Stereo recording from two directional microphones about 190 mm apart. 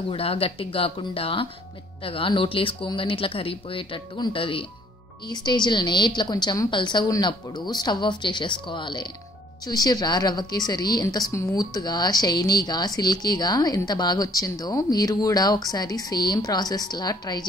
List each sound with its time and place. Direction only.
0.1 s a woman's voice: 30° left (ahead or behind)